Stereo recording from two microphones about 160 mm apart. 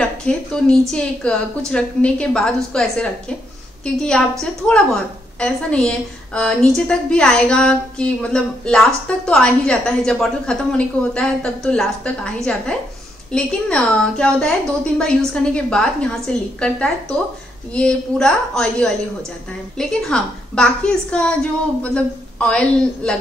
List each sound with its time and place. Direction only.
0.0 s a woman's voice: 5° left (ahead or behind)